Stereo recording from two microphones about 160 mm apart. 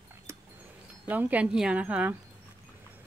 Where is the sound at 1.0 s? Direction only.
10° right (ahead or behind).